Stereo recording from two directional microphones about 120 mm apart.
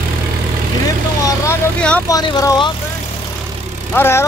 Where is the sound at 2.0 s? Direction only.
30° left (ahead or behind).